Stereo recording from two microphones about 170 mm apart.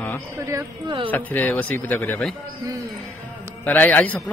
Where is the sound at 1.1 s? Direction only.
10° left (ahead or behind).